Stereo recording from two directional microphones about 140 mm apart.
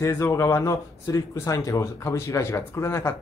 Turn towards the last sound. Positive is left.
turn(degrees=20)  # may be behind; listen again after turning